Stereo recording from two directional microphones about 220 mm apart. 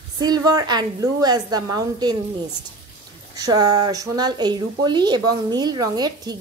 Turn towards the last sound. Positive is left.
turn(degrees=-20)  # may be behind; listen again after turning